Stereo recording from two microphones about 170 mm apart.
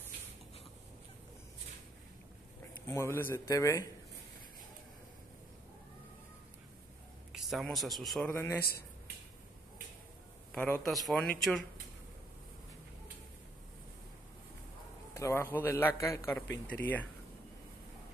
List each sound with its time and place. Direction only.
2.9 s a man's voice: 15° left (ahead or behind)
7.3 s a sound: centre (ahead or behind)
7.7 s speech: centre (ahead or behind)
8.3 s a man's voice: 15° left (ahead or behind)
8.5 s speech: 65° left (ahead or behind)
10.5 s a man's voice: 10° left (ahead or behind)
15.1 s a man's voice: 15° left (ahead or behind)